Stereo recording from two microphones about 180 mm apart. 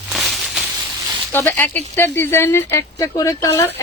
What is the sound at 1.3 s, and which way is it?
Speech, 10° left (ahead or behind).